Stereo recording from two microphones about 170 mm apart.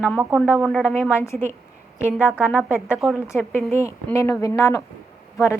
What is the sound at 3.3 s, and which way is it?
Speech, 15° left (ahead or behind).